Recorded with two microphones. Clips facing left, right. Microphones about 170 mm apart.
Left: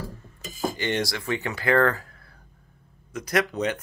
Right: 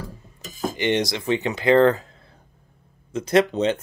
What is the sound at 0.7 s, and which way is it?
Speech, 20° right (ahead or behind).